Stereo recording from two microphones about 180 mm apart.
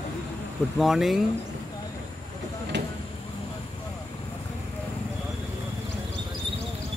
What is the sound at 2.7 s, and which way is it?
Vehicle, 75° right (ahead or behind).